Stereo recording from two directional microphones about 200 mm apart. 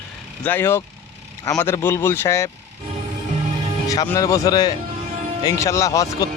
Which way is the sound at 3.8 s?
15° left (ahead or behind).